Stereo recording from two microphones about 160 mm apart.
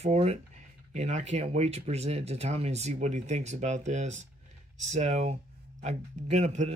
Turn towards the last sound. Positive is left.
turn(degrees=-45)  # may be behind; listen again after turning